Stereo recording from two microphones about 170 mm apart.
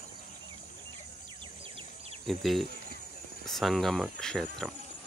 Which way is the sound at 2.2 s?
Centre (ahead or behind).